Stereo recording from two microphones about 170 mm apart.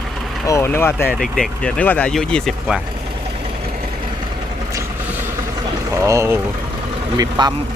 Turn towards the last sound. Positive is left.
turn(degrees=-25)  # may be behind; listen again after turning